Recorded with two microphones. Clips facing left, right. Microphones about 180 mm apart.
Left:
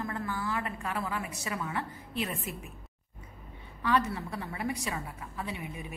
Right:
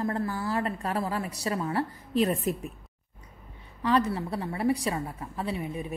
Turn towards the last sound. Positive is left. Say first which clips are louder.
# right 7 dB
turn(degrees=-35)  # may be behind; listen again after turning